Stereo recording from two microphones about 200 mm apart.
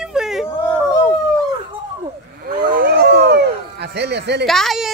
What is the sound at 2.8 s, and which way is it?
Howl, 50° right (ahead or behind).